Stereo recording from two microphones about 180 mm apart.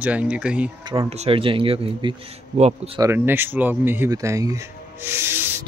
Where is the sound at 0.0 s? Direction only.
5° right (ahead or behind).